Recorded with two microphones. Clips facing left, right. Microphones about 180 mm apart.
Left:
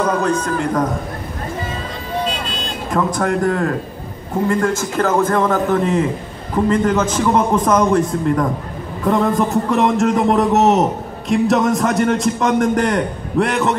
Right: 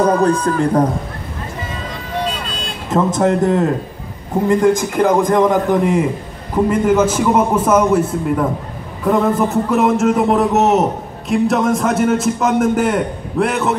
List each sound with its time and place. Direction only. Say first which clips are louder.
0.0 s speech: right 4 dB; 35° right (ahead or behind)
2.9 s a man's voice: right 4 dB; 25° right (ahead or behind); by 13.7 s centre (ahead or behind)